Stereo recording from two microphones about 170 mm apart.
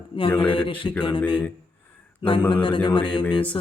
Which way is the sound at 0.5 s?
30° left (ahead or behind).